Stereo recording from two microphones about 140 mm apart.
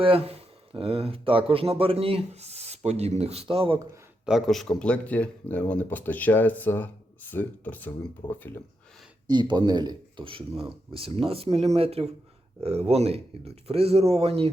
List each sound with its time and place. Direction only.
0.0 s speech: 45° right (ahead or behind)
4.3 s speech: centre (ahead or behind); by 8.6 s 15° left (ahead or behind)
9.2 s speech: 30° right (ahead or behind)